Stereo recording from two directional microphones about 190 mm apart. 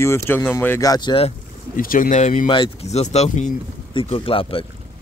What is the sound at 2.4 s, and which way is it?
Speech, 25° left (ahead or behind).